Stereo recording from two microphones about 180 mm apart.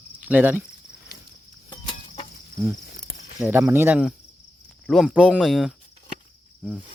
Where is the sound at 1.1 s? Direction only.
60° left (ahead or behind).